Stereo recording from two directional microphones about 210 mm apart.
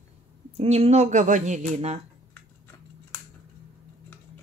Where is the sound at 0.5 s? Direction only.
30° right (ahead or behind).